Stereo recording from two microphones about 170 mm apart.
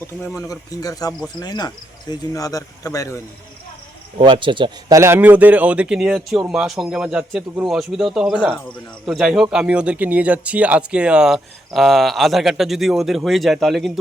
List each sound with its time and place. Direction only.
0.3 s speech: 20° left (ahead or behind)
4.2 s speech: 30° right (ahead or behind)
4.9 s a man's voice: 15° right (ahead or behind)